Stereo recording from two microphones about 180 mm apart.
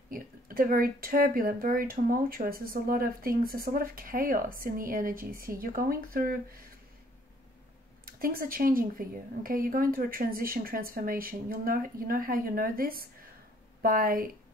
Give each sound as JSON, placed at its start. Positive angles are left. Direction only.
{"t": 0.1, "sound": "speech", "side_deg": -50}
{"t": 8.0, "sound": "speech", "side_deg": -55}